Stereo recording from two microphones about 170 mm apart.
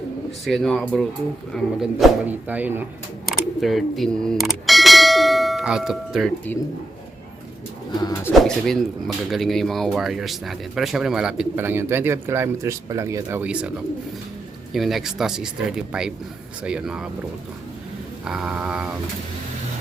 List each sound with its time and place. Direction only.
0.4 s speech: centre (ahead or behind)
3.2 s bell: centre (ahead or behind)
7.9 s bird: 25° left (ahead or behind)
8.3 s speech: centre (ahead or behind)
18.3 s speech: 5° right (ahead or behind)